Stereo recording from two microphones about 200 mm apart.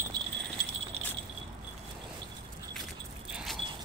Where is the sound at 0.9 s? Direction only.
30° right (ahead or behind).